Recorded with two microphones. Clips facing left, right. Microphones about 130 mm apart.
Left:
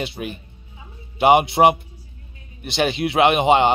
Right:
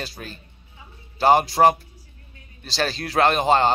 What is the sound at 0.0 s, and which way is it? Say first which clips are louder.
A man's voice: left 7 dB; 20° left (ahead or behind).